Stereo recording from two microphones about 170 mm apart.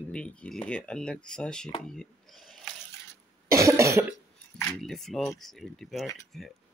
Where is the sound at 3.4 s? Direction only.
15° right (ahead or behind).